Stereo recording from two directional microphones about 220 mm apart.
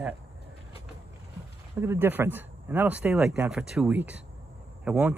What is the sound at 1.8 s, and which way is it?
Speech, 10° right (ahead or behind).